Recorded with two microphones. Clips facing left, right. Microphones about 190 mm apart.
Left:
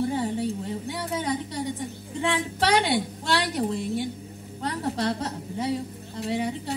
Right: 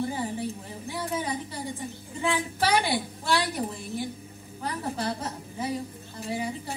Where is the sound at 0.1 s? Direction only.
70° left (ahead or behind).